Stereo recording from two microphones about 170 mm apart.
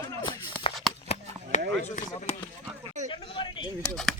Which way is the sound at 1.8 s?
40° left (ahead or behind).